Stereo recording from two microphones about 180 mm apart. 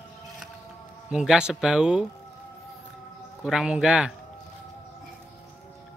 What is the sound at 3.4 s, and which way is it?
Speech, 5° right (ahead or behind).